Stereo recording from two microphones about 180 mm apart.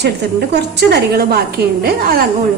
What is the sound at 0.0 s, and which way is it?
A woman's voice, 70° right (ahead or behind).